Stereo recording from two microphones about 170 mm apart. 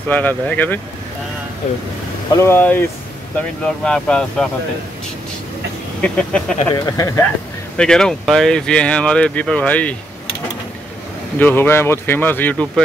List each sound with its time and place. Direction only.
0.1 s speech: 10° left (ahead or behind)
2.3 s speech: 15° left (ahead or behind)
5.9 s speech: 5° left (ahead or behind)
6.7 s speech: 20° left (ahead or behind)
7.7 s speech: 5° left (ahead or behind)
11.3 s speech: 10° left (ahead or behind)